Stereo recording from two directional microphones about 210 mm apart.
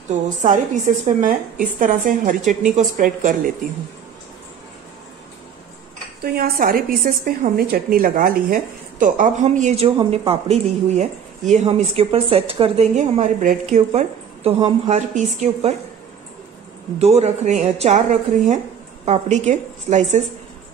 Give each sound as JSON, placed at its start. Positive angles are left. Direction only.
{"t": 0.1, "sound": "a woman's voice", "side_deg": -35}
{"t": 6.2, "sound": "a woman's voice", "side_deg": -45}
{"t": 17.0, "sound": "a woman's voice", "side_deg": -30}
{"t": 19.0, "sound": "a woman's voice", "side_deg": -35}